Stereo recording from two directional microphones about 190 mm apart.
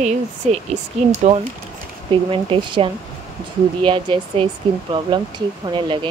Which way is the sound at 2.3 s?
25° right (ahead or behind).